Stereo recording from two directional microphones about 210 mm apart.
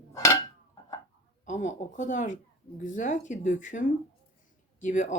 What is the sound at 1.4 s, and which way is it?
Speech, 35° left (ahead or behind).